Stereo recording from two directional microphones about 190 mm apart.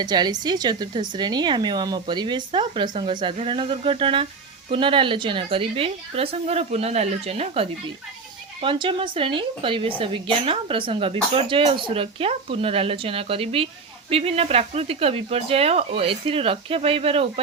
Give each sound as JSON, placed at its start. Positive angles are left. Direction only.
{"t": 0.0, "sound": "speech", "side_deg": -20}